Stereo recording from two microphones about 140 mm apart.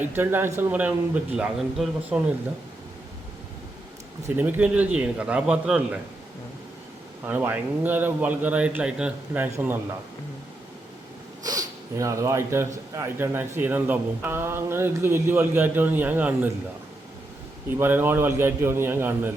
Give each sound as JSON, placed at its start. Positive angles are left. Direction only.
{"t": 0.0, "sound": "speech", "side_deg": -15}
{"t": 4.4, "sound": "speech", "side_deg": -10}
{"t": 7.3, "sound": "speech", "side_deg": -15}
{"t": 11.4, "sound": "speech", "side_deg": -25}
{"t": 17.7, "sound": "speech", "side_deg": -15}